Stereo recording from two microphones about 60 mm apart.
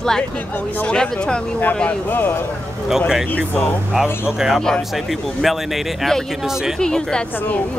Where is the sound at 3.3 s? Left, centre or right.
Left.